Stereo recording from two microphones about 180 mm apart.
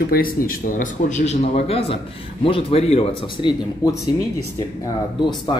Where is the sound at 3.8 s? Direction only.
20° left (ahead or behind).